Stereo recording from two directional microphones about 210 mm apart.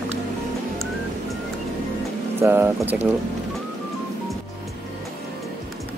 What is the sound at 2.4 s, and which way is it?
Speech, 10° right (ahead or behind).